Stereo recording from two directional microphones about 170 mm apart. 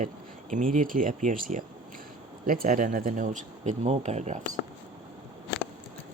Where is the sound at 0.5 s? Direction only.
50° right (ahead or behind).